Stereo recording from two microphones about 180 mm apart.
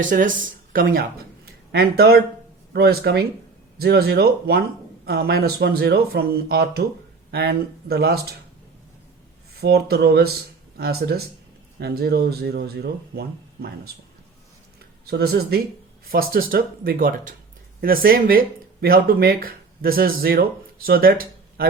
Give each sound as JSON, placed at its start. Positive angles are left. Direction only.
{"t": 0.0, "sound": "speech", "side_deg": -50}
{"t": 9.6, "sound": "speech", "side_deg": -65}
{"t": 15.0, "sound": "speech", "side_deg": -65}